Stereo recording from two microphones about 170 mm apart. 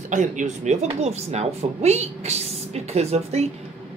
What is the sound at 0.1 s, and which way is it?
Speech, 45° right (ahead or behind).